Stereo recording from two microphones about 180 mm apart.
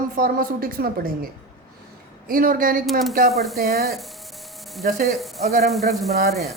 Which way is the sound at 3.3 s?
Centre (ahead or behind).